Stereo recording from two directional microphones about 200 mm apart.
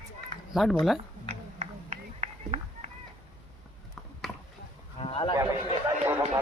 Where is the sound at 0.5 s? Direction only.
Centre (ahead or behind).